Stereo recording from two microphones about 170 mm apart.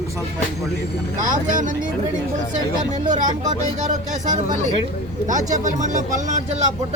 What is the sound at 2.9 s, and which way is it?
Speech, 50° right (ahead or behind).